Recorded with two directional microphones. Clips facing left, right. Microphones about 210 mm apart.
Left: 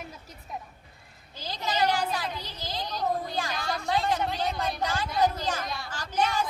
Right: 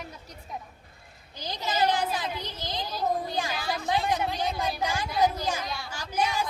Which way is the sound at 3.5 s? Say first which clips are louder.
Right 1 dB; 5° right (ahead or behind).